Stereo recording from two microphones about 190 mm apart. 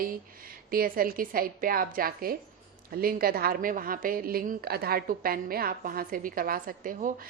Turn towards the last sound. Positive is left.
turn(degrees=-45)  # may be behind; listen again after turning